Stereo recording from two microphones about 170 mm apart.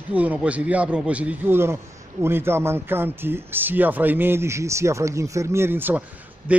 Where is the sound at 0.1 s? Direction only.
10° right (ahead or behind).